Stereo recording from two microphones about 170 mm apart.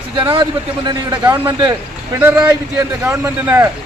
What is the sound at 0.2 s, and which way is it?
A man's voice, 25° right (ahead or behind).